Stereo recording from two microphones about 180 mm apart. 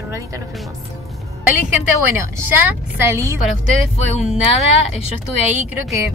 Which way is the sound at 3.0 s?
15° right (ahead or behind).